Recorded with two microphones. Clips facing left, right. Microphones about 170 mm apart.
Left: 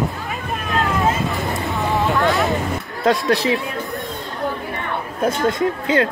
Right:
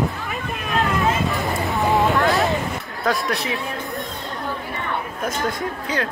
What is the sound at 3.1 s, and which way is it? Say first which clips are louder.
Speech: left 5 dB; 20° left (ahead or behind).